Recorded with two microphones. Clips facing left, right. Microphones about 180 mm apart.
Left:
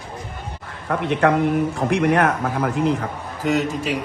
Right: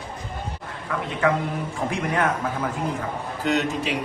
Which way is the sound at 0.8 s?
65° left (ahead or behind).